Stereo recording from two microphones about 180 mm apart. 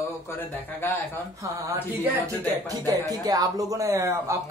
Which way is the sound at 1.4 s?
15° right (ahead or behind).